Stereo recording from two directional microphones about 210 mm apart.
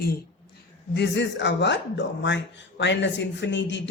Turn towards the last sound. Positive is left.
turn(degrees=60)  # may be behind; listen again after turning